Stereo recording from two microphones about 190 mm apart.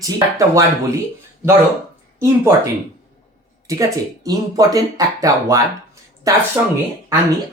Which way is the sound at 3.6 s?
15° right (ahead or behind).